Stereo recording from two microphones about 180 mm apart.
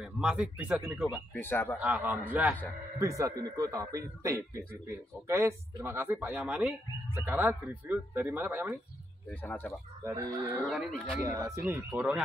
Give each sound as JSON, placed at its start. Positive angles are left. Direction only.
{"t": 0.0, "sound": "a man's voice", "side_deg": -5}
{"t": 1.1, "sound": "speech", "side_deg": 10}
{"t": 1.8, "sound": "a man's voice", "side_deg": -5}
{"t": 9.3, "sound": "speech", "side_deg": 10}
{"t": 10.0, "sound": "a man's voice", "side_deg": -15}
{"t": 10.6, "sound": "speech", "side_deg": 0}
{"t": 11.2, "sound": "a man's voice", "side_deg": -20}